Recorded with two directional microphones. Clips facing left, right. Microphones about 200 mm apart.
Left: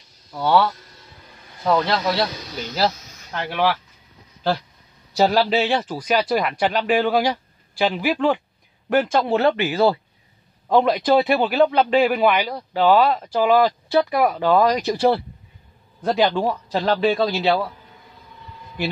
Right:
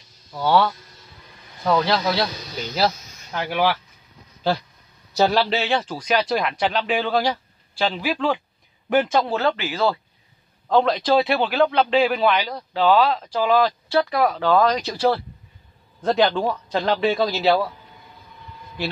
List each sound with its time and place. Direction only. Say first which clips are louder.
0.3 s speech: left 1 dB; centre (ahead or behind)
3.3 s speech: even; 5° right (ahead or behind)
5.1 s speech: left 2 dB; 5° left (ahead or behind)
16.0 s speech: even; centre (ahead or behind)